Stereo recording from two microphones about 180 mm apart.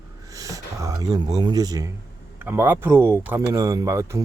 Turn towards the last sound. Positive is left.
turn(degrees=-15)  # may be behind; listen again after turning